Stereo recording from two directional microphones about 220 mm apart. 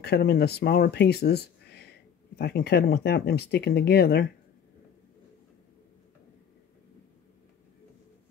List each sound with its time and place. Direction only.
0.0 s speech: 45° left (ahead or behind)